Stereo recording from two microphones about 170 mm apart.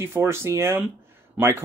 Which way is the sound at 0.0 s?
15° right (ahead or behind).